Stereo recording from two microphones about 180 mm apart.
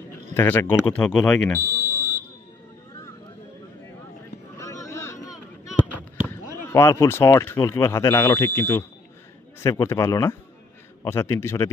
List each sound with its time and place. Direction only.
0.3 s speech: 15° left (ahead or behind)
1.8 s fire alarm: 15° left (ahead or behind)
4.6 s a sound: 15° left (ahead or behind)
6.2 s speech: 15° left (ahead or behind)